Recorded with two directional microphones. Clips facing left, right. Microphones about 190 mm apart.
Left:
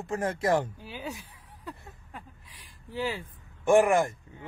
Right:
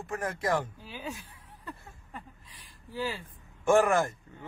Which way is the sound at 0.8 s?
15° left (ahead or behind).